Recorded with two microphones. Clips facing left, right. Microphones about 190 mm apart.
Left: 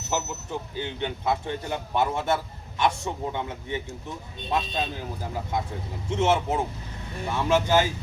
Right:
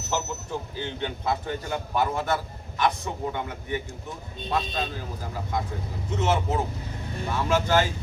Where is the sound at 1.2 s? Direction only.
25° left (ahead or behind).